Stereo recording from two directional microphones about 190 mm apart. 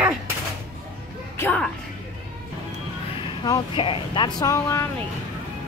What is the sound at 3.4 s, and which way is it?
Speech, 25° left (ahead or behind).